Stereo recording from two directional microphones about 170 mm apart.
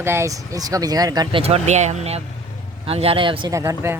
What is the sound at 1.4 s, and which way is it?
Speech, 40° right (ahead or behind).